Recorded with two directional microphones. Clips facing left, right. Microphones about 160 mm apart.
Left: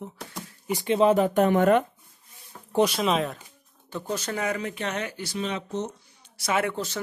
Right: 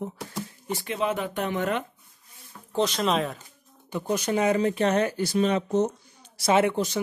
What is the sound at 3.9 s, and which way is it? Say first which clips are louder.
Speech: right 4 dB; 15° right (ahead or behind).